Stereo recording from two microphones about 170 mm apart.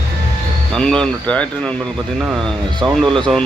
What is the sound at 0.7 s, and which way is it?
Speech, 5° left (ahead or behind).